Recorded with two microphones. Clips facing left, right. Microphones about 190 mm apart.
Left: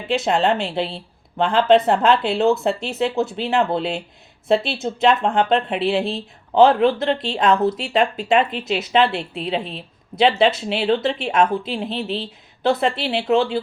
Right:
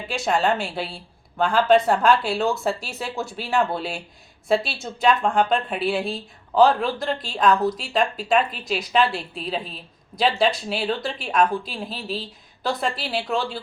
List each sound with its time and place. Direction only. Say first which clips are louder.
0.1 s speech: left 4 dB; 25° left (ahead or behind)